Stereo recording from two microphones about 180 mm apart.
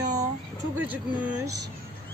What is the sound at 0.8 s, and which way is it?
Speech, 10° right (ahead or behind).